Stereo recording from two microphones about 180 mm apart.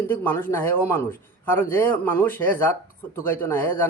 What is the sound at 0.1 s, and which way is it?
A man's voice, 10° left (ahead or behind).